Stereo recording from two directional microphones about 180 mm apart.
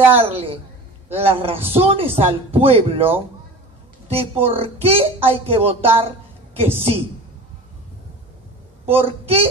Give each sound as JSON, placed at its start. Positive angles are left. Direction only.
{"t": 0.1, "sound": "a man's voice", "side_deg": -30}
{"t": 8.9, "sound": "a man's voice", "side_deg": -30}